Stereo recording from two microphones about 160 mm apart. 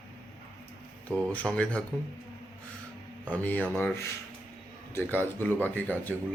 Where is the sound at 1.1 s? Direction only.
10° left (ahead or behind).